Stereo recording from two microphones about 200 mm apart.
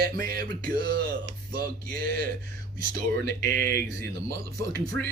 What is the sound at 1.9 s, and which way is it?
Speech, 45° right (ahead or behind).